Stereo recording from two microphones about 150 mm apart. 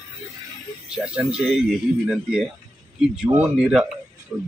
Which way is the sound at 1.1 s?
5° right (ahead or behind).